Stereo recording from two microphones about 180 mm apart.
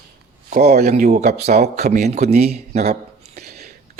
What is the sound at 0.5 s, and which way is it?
Speech, 60° right (ahead or behind).